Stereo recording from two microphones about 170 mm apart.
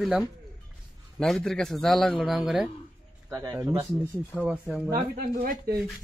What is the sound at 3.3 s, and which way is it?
Speech, 15° right (ahead or behind).